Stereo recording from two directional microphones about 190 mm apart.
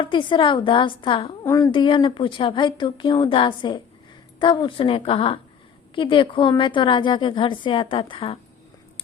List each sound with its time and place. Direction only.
0.0 s a woman's voice: 25° left (ahead or behind)